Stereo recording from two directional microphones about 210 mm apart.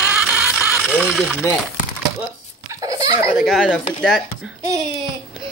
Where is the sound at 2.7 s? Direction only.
15° right (ahead or behind).